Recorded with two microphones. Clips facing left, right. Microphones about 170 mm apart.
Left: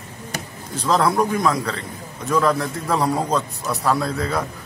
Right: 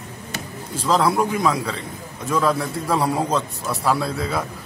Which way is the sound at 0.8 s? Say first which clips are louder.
Even; 5° right (ahead or behind).